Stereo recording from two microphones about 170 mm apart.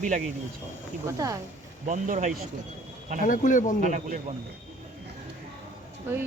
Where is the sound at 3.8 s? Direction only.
45° right (ahead or behind).